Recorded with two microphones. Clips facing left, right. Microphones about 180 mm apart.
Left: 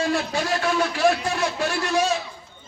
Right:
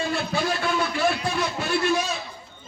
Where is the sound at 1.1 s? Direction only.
90° left.